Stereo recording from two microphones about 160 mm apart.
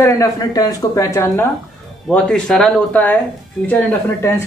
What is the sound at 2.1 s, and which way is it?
Speech, 5° left (ahead or behind).